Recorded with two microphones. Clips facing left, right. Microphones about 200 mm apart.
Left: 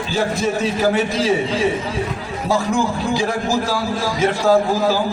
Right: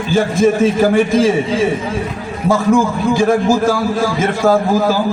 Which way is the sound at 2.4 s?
50° right (ahead or behind).